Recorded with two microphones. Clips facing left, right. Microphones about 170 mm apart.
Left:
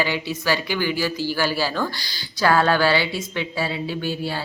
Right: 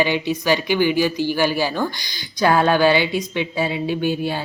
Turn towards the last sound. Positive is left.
turn(degrees=-20)  # may be behind; listen again after turning